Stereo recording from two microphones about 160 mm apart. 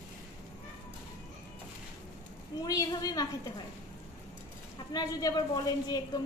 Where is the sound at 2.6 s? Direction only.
20° left (ahead or behind).